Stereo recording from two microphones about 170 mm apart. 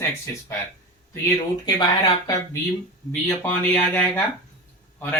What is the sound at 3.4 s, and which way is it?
Speech, 10° left (ahead or behind).